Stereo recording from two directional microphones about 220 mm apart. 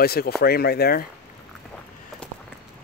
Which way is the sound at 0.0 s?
45° left (ahead or behind).